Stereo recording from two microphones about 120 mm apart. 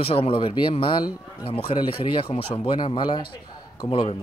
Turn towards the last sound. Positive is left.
turn(degrees=50)  # may be behind; listen again after turning